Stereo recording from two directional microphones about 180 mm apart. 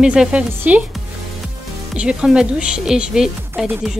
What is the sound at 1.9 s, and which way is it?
A woman's voice, 5° right (ahead or behind).